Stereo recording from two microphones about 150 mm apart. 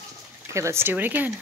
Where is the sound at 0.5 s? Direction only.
15° right (ahead or behind).